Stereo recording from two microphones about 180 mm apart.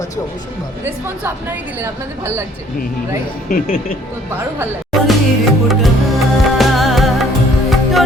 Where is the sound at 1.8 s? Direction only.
15° right (ahead or behind).